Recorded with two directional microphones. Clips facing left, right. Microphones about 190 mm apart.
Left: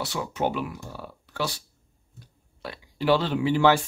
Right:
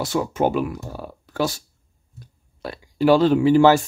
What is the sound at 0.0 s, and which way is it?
Speech, 45° right (ahead or behind).